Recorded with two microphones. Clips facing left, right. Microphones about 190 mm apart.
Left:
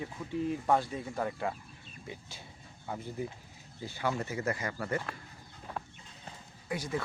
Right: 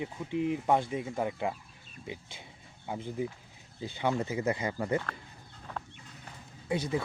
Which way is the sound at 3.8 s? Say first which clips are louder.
Right 3 dB; 20° right (ahead or behind).